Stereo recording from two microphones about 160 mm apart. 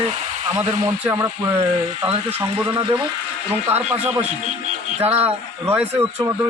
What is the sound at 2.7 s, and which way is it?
Speech, 25° right (ahead or behind).